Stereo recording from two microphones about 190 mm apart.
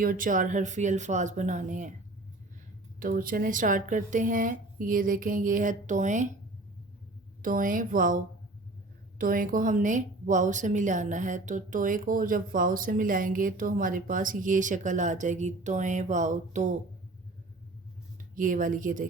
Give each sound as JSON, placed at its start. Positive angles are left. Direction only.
{"t": 0.0, "sound": "a woman's voice", "side_deg": -45}
{"t": 3.0, "sound": "speech", "side_deg": -45}
{"t": 7.4, "sound": "a woman's voice", "side_deg": -45}
{"t": 18.3, "sound": "speech", "side_deg": -45}